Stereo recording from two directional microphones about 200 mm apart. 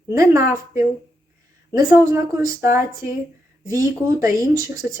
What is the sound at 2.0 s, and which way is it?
Speech, 15° right (ahead or behind).